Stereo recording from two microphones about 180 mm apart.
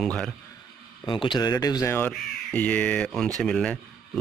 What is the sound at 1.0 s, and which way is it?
Speech, 25° left (ahead or behind).